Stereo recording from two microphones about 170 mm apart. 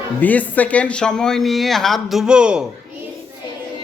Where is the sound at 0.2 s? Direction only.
10° left (ahead or behind).